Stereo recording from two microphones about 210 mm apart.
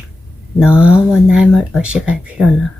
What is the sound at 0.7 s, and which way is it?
A woman's voice, 5° right (ahead or behind).